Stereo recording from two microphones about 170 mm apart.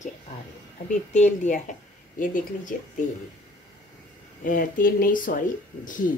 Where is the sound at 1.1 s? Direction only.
45° left (ahead or behind).